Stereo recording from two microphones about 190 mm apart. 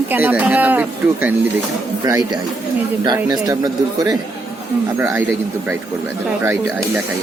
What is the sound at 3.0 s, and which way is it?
Speech, 20° right (ahead or behind).